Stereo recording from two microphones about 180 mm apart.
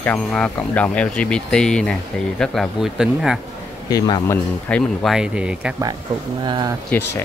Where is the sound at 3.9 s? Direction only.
20° left (ahead or behind).